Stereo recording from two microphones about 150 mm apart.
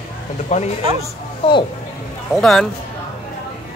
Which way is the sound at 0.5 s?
50° left (ahead or behind).